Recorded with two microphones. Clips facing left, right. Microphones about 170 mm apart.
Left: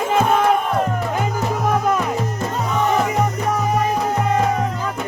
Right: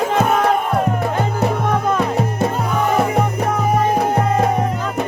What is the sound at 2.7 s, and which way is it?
Music, 10° right (ahead or behind).